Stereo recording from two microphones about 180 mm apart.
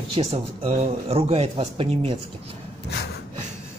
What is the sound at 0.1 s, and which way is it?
Speech, 35° right (ahead or behind).